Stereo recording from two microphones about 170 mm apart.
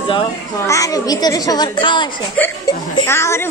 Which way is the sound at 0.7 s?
20° left (ahead or behind).